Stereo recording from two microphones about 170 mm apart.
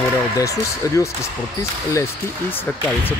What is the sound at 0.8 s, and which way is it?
Speech, 20° left (ahead or behind).